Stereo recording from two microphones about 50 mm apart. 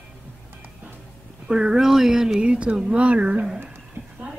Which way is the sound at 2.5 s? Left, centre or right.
Right.